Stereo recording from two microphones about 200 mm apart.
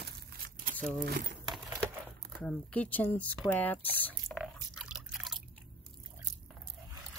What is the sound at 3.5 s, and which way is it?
Drip, 10° left (ahead or behind).